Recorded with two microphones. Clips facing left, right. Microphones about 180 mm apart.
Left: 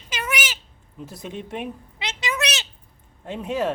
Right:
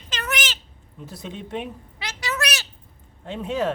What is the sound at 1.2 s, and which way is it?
Speech, 10° left (ahead or behind).